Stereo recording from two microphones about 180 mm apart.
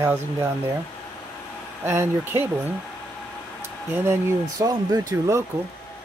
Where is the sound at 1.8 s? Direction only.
15° right (ahead or behind).